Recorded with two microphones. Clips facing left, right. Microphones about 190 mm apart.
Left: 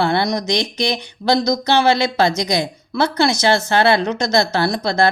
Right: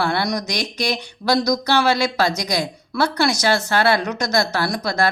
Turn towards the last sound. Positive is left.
turn(degrees=25)  # may be behind; listen again after turning